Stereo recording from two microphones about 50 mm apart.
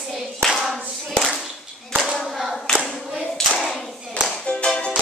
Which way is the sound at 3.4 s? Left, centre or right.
Centre.